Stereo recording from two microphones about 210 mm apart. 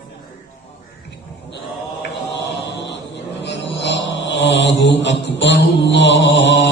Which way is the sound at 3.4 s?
55° left (ahead or behind).